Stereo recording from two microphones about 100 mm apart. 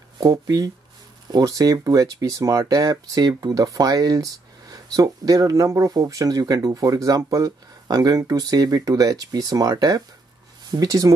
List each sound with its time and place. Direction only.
0.2 s speech: 40° right (ahead or behind)